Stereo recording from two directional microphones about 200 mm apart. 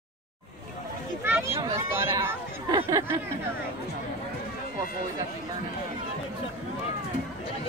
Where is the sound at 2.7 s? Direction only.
25° right (ahead or behind).